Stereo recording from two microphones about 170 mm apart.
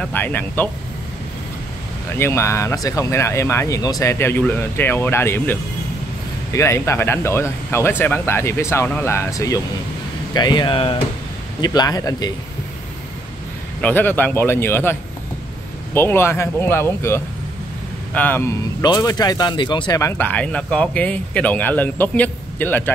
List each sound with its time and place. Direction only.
0.0 s speech: 10° left (ahead or behind)
2.1 s speech: 15° left (ahead or behind)
13.7 s speech: 10° left (ahead or behind); by 20.0 s 25° left (ahead or behind)
20.0 s speech: 15° left (ahead or behind)